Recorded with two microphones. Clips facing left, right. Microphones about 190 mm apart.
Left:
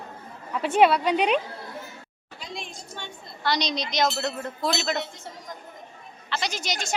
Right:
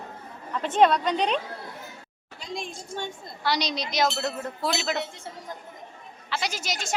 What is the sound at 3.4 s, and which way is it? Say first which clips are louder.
A woman's voice: left 1 dB; 10° right (ahead or behind).